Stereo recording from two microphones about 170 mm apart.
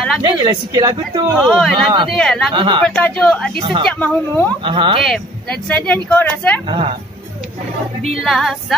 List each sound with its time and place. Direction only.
0.2 s a woman's voice: 25° right (ahead or behind)
1.4 s speech: centre (ahead or behind)
2.5 s a woman's voice: 30° right (ahead or behind)
2.8 s speech: 5° left (ahead or behind)
3.5 s a woman's voice: 30° right (ahead or behind)
3.8 s speech: 10° left (ahead or behind)
4.6 s a woman's voice: 30° right (ahead or behind)
5.0 s speech: 5° left (ahead or behind)
6.7 s speech: 35° right (ahead or behind)
8.1 s speech: centre (ahead or behind)